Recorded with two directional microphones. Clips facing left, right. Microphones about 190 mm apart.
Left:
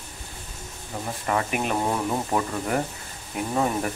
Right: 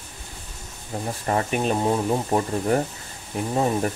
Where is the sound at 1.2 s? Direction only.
35° right (ahead or behind).